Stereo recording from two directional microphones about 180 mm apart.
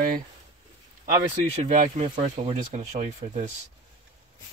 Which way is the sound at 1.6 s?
40° right (ahead or behind).